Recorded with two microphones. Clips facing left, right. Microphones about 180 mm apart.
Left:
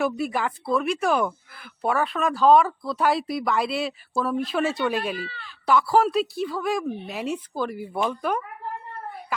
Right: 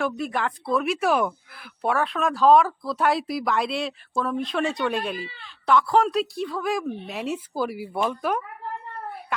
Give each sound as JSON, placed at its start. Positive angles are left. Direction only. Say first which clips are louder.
{"t": 0.0, "sound": "speech", "louder": "left 1 dB", "side_deg": 5}